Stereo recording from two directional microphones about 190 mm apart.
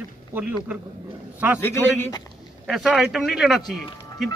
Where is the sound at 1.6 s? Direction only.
10° left (ahead or behind).